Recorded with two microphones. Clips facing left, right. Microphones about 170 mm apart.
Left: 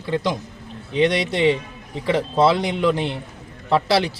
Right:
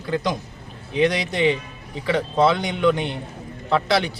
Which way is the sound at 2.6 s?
Centre (ahead or behind).